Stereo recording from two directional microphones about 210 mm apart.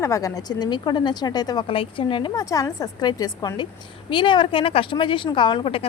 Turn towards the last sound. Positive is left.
turn(degrees=25)  # may be behind; listen again after turning